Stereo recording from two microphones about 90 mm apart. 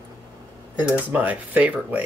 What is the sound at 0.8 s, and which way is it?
Speech, 15° right (ahead or behind).